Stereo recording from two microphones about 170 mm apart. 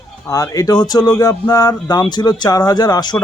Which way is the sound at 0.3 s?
20° left (ahead or behind).